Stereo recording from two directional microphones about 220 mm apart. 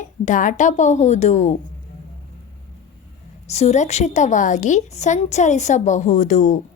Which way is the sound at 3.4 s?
30° left (ahead or behind).